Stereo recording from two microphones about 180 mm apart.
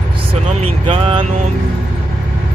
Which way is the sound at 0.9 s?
30° right (ahead or behind).